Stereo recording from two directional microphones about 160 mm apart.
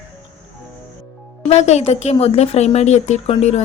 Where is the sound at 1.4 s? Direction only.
45° left (ahead or behind).